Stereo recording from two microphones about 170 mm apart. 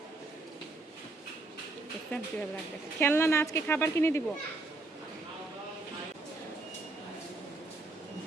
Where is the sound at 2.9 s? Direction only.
15° left (ahead or behind).